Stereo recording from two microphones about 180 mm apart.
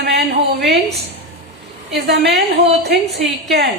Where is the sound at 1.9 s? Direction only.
65° right (ahead or behind).